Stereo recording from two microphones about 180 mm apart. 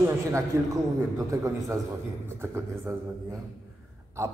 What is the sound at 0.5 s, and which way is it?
Speech, 15° right (ahead or behind).